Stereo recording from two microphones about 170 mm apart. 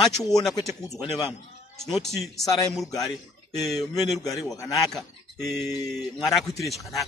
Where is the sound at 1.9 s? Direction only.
Centre (ahead or behind).